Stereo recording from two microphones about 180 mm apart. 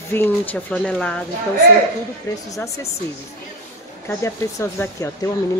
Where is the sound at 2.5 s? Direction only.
15° left (ahead or behind).